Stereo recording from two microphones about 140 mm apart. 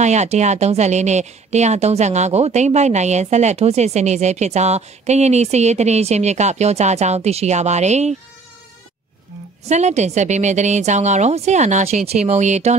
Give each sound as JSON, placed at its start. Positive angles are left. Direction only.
{"t": 0.0, "sound": "a woman's voice", "side_deg": -55}
{"t": 9.7, "sound": "a woman's voice", "side_deg": -55}